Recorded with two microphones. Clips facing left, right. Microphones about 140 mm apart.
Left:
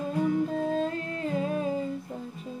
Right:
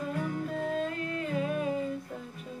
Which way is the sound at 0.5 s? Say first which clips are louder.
Left 4 dB; 30° left (ahead or behind).